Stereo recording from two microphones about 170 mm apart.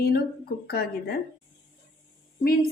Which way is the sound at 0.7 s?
65° left (ahead or behind).